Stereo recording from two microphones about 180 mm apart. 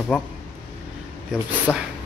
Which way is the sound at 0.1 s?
Centre (ahead or behind).